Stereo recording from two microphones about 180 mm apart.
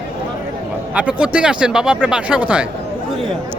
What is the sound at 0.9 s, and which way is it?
Speech, 5° right (ahead or behind).